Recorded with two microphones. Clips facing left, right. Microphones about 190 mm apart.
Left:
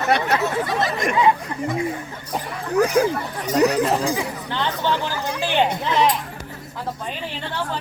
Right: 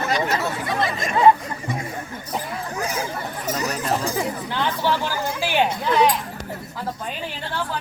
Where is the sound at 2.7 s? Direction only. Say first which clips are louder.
Left 12 dB; 65° left (ahead or behind).